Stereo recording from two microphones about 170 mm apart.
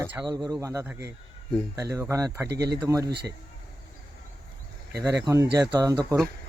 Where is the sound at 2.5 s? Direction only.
75° right (ahead or behind).